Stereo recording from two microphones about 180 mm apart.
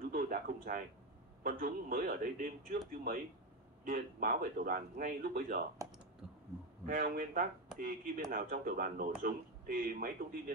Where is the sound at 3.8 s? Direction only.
50° right (ahead or behind).